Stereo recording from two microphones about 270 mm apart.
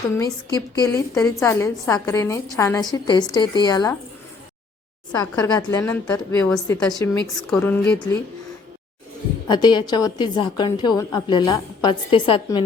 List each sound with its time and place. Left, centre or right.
0.2 s a woman's voice: centre
5.1 s a woman's voice: centre
9.5 s a woman's voice: centre